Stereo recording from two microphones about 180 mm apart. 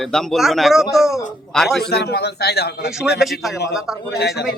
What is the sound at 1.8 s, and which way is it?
A man's voice, 65° left (ahead or behind).